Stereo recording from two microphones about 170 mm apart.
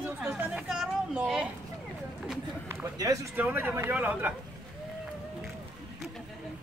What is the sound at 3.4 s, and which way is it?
Speech, 10° right (ahead or behind).